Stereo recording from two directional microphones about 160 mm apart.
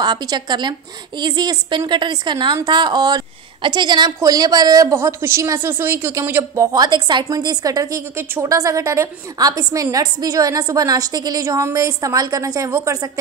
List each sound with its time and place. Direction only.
0.0 s a woman's voice: 25° right (ahead or behind)